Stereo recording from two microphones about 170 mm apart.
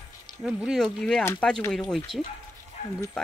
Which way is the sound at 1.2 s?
15° left (ahead or behind).